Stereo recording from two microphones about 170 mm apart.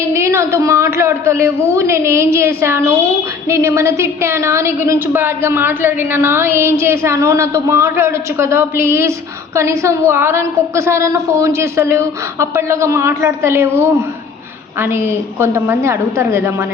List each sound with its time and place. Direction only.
0.0 s a woman's voice: 15° right (ahead or behind)